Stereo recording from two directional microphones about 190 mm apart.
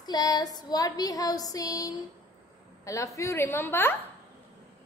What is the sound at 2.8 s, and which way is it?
A woman's voice, 15° left (ahead or behind).